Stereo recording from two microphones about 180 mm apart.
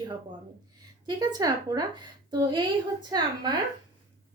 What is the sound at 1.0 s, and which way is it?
Speech, 20° right (ahead or behind).